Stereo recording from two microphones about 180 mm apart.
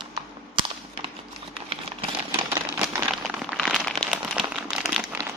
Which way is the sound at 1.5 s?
30° right (ahead or behind).